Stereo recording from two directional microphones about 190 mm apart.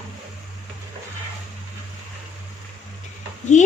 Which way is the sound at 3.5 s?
40° left (ahead or behind).